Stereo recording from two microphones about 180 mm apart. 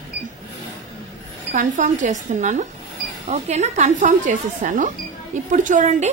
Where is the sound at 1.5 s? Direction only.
45° right (ahead or behind).